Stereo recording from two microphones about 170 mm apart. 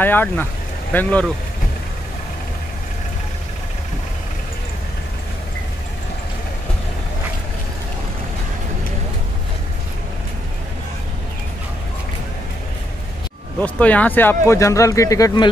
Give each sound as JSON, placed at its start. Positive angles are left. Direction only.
{"t": 0.0, "sound": "speech", "side_deg": 10}
{"t": 13.6, "sound": "speech", "side_deg": 10}